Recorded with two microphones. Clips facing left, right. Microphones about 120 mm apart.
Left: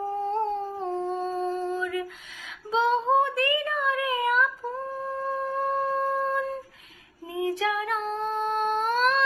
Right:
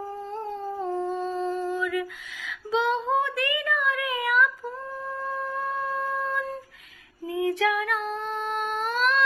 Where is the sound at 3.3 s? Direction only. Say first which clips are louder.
Left 1 dB; 35° left (ahead or behind).